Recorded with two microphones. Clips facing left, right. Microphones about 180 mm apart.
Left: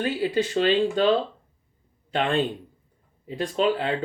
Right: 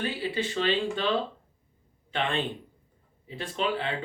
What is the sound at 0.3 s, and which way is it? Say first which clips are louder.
Speech: left 6 dB; 40° left (ahead or behind).